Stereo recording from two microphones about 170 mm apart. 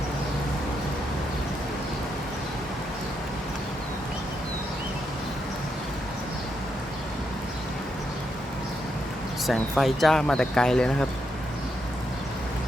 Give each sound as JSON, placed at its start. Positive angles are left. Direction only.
{"t": 9.5, "sound": "speech", "side_deg": 0}